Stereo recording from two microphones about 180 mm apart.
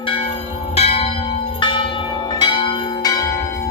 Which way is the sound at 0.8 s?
35° left (ahead or behind).